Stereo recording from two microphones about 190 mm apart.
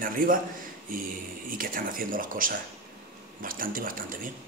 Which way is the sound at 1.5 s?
45° right (ahead or behind).